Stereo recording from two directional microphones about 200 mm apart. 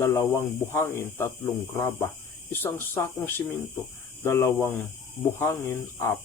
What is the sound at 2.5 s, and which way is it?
Speech, 10° left (ahead or behind).